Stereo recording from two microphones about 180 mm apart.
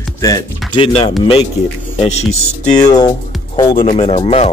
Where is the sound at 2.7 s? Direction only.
20° left (ahead or behind).